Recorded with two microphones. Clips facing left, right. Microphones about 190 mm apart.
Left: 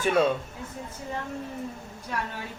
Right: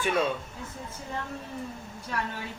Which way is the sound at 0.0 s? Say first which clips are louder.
Left 4 dB; 45° left (ahead or behind).